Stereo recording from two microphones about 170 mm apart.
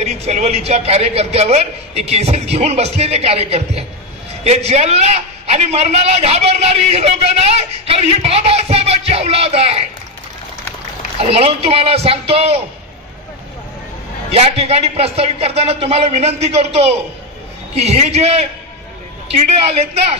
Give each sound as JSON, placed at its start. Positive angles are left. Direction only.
{"t": 0.0, "sound": "a man's voice", "side_deg": -40}
{"t": 11.1, "sound": "a man's voice", "side_deg": -35}
{"t": 14.3, "sound": "a man's voice", "side_deg": -35}